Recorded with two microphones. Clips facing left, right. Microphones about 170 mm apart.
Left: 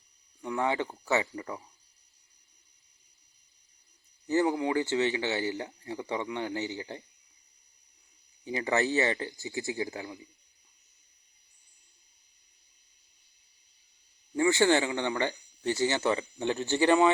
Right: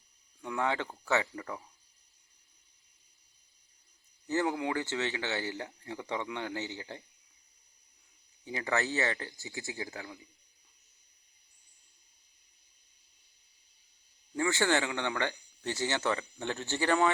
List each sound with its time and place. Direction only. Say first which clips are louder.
0.4 s speech: left 3 dB; 15° left (ahead or behind)
4.3 s speech: left 4 dB; 15° left (ahead or behind)
8.4 s speech: left 4 dB; 20° left (ahead or behind)
14.3 s speech: left 5 dB; 15° left (ahead or behind)